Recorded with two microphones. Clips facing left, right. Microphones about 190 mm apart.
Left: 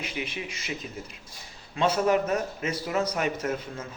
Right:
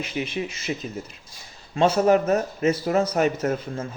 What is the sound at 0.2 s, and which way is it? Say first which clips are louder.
Speech: right 9 dB; 40° right (ahead or behind).